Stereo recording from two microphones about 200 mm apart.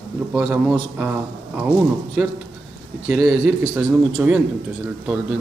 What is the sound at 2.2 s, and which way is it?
A man's voice, 5° right (ahead or behind).